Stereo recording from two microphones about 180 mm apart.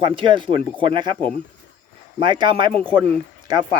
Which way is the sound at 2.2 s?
25° right (ahead or behind).